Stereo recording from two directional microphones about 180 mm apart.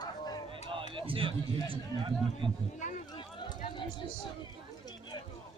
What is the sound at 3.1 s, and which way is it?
Run, 25° left (ahead or behind).